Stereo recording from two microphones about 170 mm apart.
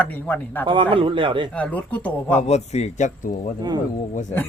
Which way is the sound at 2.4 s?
40° left (ahead or behind).